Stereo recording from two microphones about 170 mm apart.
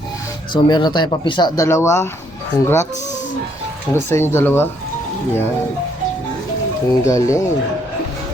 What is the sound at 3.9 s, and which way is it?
Speech, 15° left (ahead or behind).